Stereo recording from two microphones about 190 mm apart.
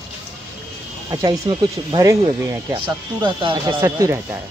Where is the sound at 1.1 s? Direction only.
20° right (ahead or behind).